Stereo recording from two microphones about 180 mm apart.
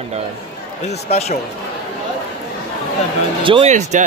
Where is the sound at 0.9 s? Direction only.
35° left (ahead or behind).